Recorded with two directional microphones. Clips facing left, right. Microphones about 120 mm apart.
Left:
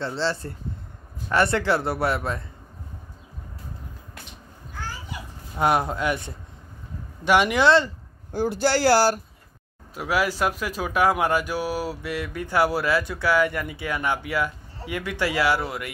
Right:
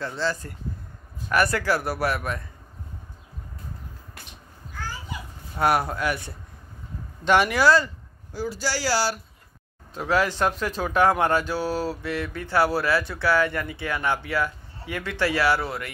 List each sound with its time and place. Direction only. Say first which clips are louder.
0.0 s speech: left 1 dB; 30° left (ahead or behind)
5.6 s speech: left 1 dB; 20° left (ahead or behind)
8.3 s speech: left 6 dB; 55° left (ahead or behind)
9.9 s speech: right 1 dB; 10° left (ahead or behind)